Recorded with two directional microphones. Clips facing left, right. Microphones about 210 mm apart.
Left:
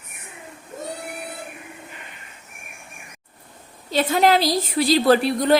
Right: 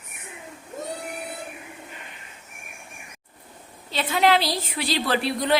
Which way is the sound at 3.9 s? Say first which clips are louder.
Left 3 dB; 45° left (ahead or behind).